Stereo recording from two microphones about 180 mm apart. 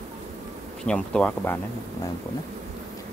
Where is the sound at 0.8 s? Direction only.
5° left (ahead or behind).